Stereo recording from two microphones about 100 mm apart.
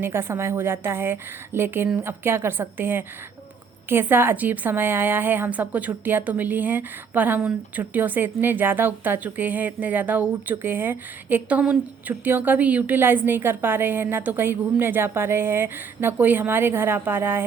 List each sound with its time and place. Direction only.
0.0 s a woman's voice: 25° right (ahead or behind)